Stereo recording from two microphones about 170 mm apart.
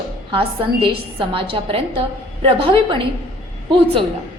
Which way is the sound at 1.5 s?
35° right (ahead or behind).